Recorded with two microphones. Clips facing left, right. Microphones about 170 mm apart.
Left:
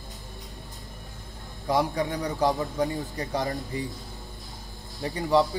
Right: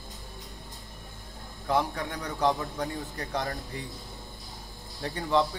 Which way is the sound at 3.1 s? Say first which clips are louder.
Left 4 dB; 20° left (ahead or behind).